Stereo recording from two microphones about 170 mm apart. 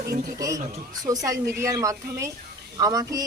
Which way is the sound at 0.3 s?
20° right (ahead or behind).